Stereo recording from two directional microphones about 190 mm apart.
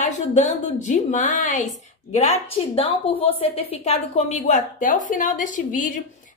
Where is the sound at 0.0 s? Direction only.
40° left (ahead or behind).